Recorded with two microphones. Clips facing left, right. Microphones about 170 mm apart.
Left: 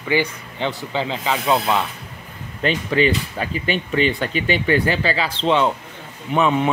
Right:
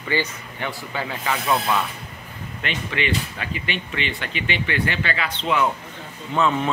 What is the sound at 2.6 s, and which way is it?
Speech, 35° left (ahead or behind).